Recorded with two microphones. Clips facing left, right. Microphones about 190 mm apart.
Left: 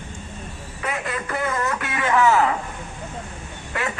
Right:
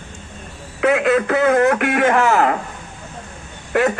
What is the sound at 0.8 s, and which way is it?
Speech, 70° right (ahead or behind).